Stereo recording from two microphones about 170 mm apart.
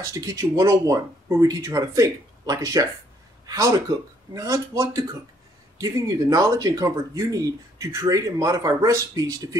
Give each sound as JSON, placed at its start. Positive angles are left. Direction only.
{"t": 0.0, "sound": "speech", "side_deg": -20}